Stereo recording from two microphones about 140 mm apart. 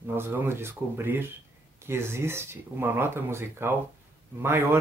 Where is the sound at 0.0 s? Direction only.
15° right (ahead or behind).